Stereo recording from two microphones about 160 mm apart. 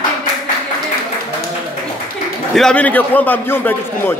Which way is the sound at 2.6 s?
5° left (ahead or behind).